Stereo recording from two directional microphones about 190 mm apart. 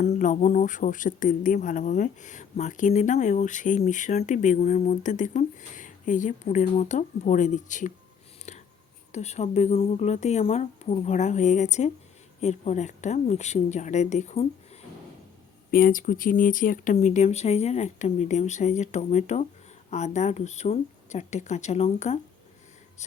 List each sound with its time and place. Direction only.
0.0 s speech: 40° left (ahead or behind)
8.5 s whispering: 40° left (ahead or behind)
9.1 s speech: 35° left (ahead or behind)
15.7 s speech: 45° left (ahead or behind)